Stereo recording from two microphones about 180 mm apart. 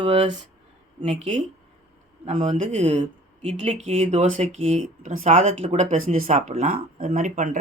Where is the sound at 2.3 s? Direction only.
40° right (ahead or behind).